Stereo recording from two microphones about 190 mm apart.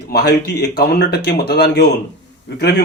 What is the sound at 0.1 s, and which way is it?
A man's voice, 60° left (ahead or behind).